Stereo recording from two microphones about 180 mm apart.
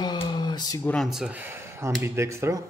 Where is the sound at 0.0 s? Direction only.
25° left (ahead or behind).